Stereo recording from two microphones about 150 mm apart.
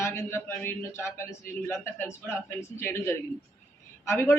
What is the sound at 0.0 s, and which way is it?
A man's voice, 15° left (ahead or behind).